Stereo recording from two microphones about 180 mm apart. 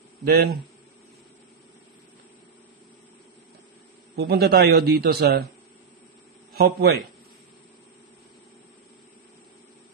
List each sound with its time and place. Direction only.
0.2 s a man's voice: 60° right (ahead or behind)
4.1 s a man's voice: 65° right (ahead or behind)
6.5 s a man's voice: 60° right (ahead or behind)